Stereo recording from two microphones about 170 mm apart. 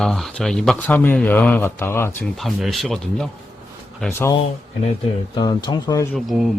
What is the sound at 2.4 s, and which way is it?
Speech, centre (ahead or behind).